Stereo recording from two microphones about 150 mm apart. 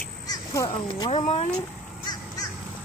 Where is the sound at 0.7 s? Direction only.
30° left (ahead or behind).